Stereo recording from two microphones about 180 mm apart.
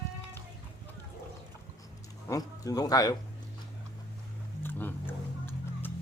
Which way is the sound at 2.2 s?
20° left (ahead or behind).